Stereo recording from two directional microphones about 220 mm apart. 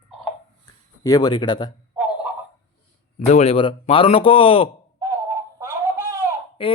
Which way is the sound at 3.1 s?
30° left (ahead or behind).